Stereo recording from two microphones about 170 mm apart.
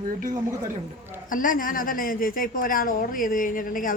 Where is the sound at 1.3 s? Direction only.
55° left (ahead or behind).